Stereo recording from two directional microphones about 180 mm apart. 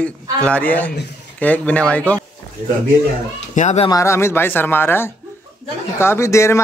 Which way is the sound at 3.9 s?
15° left (ahead or behind).